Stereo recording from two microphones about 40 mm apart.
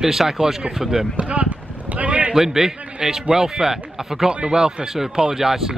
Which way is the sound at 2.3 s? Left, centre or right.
Centre.